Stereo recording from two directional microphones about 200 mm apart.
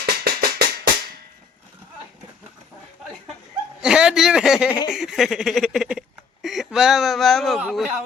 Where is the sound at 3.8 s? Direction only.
5° right (ahead or behind).